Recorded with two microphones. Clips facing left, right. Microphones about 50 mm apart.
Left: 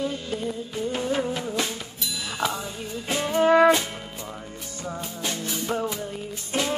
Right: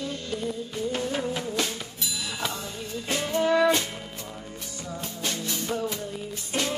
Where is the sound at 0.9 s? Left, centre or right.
Centre.